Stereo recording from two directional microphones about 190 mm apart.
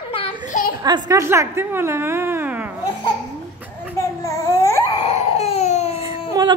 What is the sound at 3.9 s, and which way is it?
Babbling, 15° left (ahead or behind).